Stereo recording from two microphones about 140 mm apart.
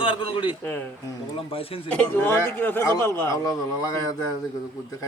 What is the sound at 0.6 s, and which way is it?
Speech, 10° left (ahead or behind).